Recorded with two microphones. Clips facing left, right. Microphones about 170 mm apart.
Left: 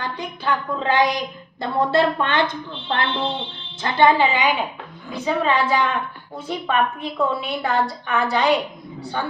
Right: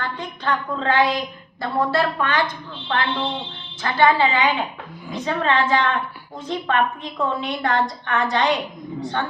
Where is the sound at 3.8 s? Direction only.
20° left (ahead or behind).